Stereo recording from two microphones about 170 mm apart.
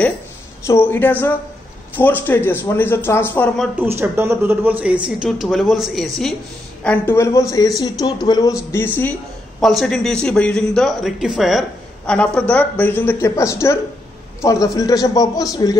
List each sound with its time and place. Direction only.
0.7 s a woman's voice: 15° left (ahead or behind)
3.8 s a woman's voice: 15° right (ahead or behind); by 8.5 s 25° left (ahead or behind)
8.7 s a woman's voice: 10° left (ahead or behind)
9.6 s a woman's voice: centre (ahead or behind); by 15.8 s 20° left (ahead or behind)